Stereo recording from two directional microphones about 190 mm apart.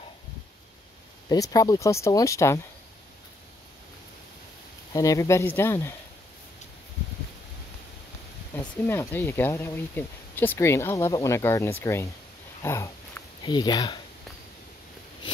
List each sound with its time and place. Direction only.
1.3 s speech: 20° left (ahead or behind)
4.9 s speech: 15° left (ahead or behind)
8.5 s speech: 10° left (ahead or behind)
12.6 s a sound: 15° left (ahead or behind)